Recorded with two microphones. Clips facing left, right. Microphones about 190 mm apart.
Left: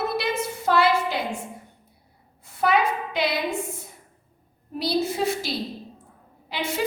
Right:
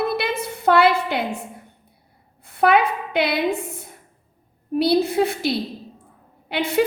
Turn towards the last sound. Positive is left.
turn(degrees=-60)  # may be behind; listen again after turning